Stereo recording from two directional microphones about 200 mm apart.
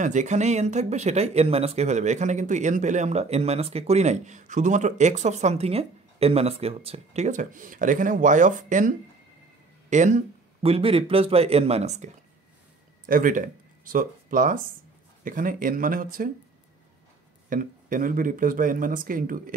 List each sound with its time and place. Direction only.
0.0 s speech: 35° right (ahead or behind)
17.5 s speech: 40° right (ahead or behind)